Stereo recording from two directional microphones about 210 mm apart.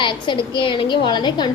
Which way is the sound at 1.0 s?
20° left (ahead or behind).